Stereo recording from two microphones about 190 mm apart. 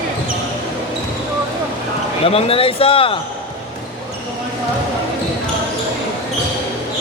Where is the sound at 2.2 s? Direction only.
30° left (ahead or behind).